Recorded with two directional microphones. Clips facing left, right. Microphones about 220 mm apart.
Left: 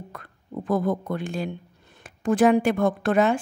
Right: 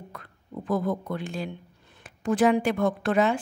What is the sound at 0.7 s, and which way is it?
A woman's voice, 50° left (ahead or behind).